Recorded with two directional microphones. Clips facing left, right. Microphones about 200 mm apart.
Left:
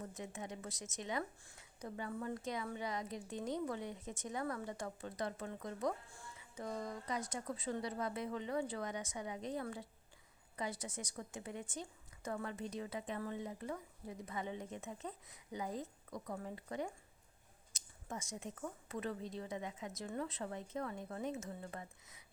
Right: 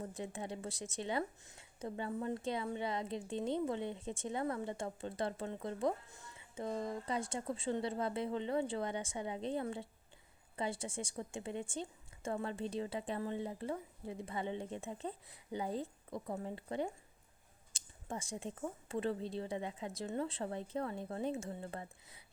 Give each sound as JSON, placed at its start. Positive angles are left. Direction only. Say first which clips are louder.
{"t": 0.0, "sound": "a woman's voice", "louder": "right 4 dB", "side_deg": -30}